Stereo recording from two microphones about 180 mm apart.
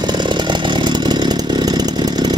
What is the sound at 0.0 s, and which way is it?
Chainsaw, 25° right (ahead or behind).